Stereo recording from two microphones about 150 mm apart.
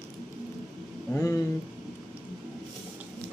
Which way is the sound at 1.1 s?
20° left (ahead or behind).